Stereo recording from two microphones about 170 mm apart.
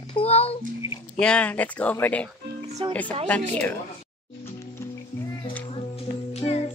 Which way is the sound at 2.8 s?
30° right (ahead or behind).